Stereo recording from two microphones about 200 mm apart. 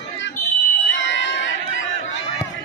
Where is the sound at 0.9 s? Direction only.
65° left (ahead or behind).